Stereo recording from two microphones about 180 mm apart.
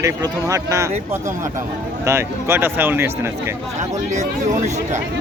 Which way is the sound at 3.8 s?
40° right (ahead or behind).